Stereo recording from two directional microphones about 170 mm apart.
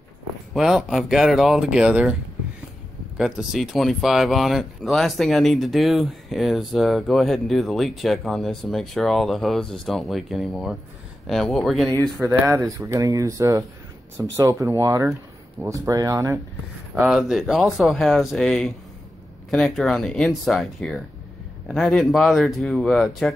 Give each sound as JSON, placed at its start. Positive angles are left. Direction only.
{"t": 0.6, "sound": "speech", "side_deg": 0}
{"t": 3.2, "sound": "speech", "side_deg": 0}
{"t": 12.2, "sound": "speech", "side_deg": -15}
{"t": 17.0, "sound": "speech", "side_deg": 0}